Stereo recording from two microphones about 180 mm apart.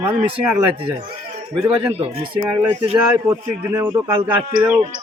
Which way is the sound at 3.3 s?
15° right (ahead or behind).